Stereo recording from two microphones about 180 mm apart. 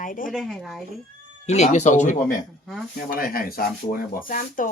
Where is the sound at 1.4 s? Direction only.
40° left (ahead or behind).